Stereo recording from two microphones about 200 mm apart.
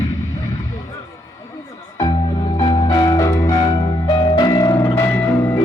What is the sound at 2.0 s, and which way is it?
Music, 25° left (ahead or behind).